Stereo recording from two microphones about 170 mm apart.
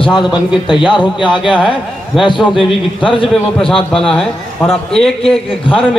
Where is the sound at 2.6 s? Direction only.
30° left (ahead or behind).